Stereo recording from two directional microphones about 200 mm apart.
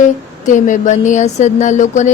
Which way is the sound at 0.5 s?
40° left (ahead or behind).